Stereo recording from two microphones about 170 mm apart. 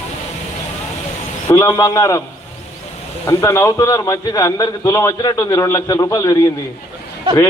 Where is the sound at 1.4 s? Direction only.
20° left (ahead or behind).